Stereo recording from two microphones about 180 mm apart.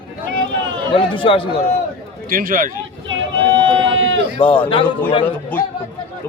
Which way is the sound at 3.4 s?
90° right.